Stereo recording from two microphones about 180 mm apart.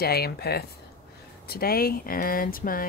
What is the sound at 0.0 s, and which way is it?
Speech, 60° left (ahead or behind).